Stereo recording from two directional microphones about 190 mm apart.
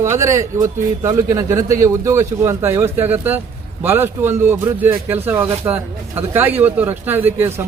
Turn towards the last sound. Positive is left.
turn(degrees=-15)  # may be behind; listen again after turning